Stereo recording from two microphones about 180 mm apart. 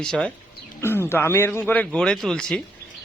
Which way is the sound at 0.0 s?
5° left (ahead or behind).